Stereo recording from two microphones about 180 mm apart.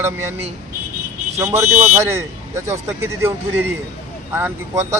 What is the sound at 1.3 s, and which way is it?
Speech, 15° right (ahead or behind).